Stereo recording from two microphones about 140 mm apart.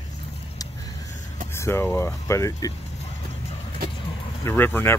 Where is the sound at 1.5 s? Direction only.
20° left (ahead or behind).